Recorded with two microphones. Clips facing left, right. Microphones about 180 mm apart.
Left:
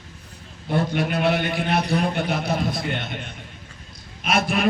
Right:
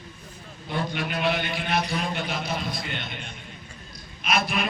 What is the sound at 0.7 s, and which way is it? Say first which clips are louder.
Speech: left 6 dB; 45° left (ahead or behind).